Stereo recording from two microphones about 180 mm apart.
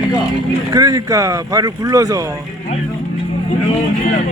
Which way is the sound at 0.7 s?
20° right (ahead or behind).